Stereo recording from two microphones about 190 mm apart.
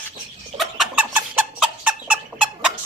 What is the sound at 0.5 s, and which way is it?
Chicken, centre (ahead or behind).